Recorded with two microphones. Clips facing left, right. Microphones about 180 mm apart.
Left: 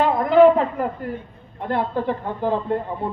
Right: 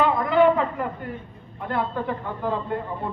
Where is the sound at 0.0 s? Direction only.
40° left (ahead or behind).